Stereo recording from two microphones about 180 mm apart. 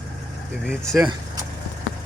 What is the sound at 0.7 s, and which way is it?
Speech, centre (ahead or behind).